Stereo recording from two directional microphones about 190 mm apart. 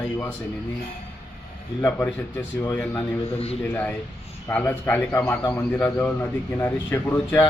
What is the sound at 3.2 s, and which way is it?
Speech, 30° left (ahead or behind).